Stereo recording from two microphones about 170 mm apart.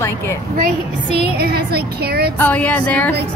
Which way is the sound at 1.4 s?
65° right (ahead or behind).